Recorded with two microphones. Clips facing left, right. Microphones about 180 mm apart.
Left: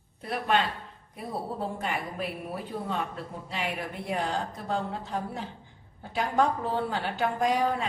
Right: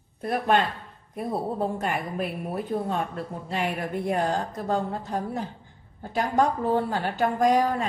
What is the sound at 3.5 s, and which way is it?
A woman's voice, 45° right (ahead or behind).